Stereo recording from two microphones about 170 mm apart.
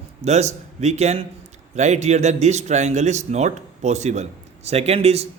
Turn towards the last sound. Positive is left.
turn(degrees=-40)  # may be behind; listen again after turning